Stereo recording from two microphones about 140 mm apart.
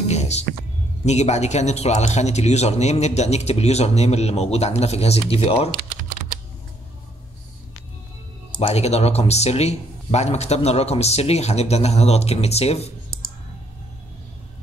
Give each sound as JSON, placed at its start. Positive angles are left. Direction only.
{"t": 0.1, "sound": "a sound", "side_deg": 50}
{"t": 1.0, "sound": "a man's voice", "side_deg": 55}
{"t": 8.5, "sound": "a man's voice", "side_deg": 45}